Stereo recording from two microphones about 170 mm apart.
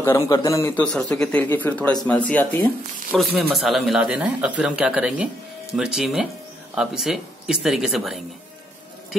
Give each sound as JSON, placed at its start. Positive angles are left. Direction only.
{"t": 0.3, "sound": "speech", "side_deg": 20}
{"t": 0.9, "sound": "speech", "side_deg": 5}
{"t": 3.1, "sound": "speech", "side_deg": -5}